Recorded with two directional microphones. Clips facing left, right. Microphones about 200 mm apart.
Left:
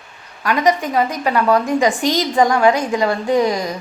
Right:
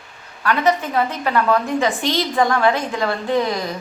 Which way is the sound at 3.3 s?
45° left (ahead or behind).